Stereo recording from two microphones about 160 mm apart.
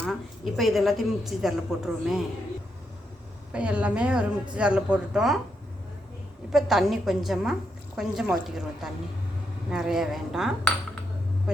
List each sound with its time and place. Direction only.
0.0 s a woman's voice: centre (ahead or behind)
3.5 s speech: 5° right (ahead or behind)
6.5 s a woman's voice: centre (ahead or behind)